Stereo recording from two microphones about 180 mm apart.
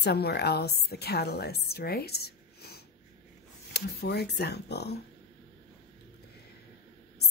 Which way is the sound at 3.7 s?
65° left (ahead or behind).